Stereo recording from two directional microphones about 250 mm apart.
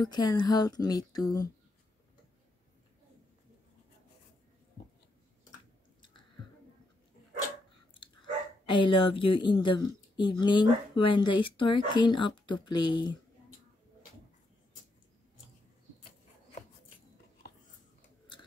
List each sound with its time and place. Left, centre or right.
0.0 s speech: centre
7.9 s speech: centre